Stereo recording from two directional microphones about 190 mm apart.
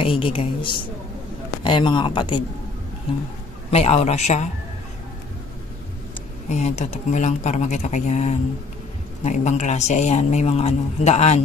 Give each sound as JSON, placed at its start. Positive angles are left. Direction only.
{"t": 0.0, "sound": "speech", "side_deg": 30}
{"t": 3.7, "sound": "a man's voice", "side_deg": 35}
{"t": 6.5, "sound": "a man's voice", "side_deg": 35}